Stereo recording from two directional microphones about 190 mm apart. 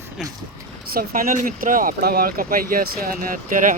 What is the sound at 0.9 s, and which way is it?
Speech, 45° right (ahead or behind).